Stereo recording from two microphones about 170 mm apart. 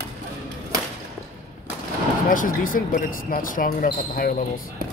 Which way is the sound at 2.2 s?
55° left (ahead or behind).